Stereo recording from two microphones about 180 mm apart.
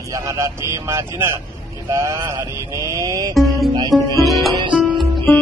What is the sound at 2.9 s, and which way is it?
Music, 20° right (ahead or behind).